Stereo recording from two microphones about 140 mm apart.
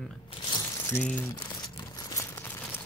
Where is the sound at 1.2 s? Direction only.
30° left (ahead or behind).